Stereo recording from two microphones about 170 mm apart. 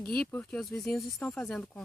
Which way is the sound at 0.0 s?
5° left (ahead or behind).